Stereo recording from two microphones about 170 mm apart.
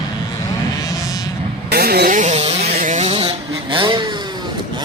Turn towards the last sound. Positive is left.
turn(degrees=-30)  # may be behind; listen again after turning